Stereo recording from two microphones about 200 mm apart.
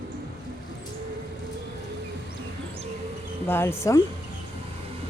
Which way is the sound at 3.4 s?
10° left (ahead or behind).